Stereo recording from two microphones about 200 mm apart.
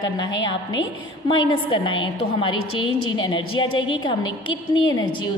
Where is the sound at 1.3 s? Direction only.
25° left (ahead or behind).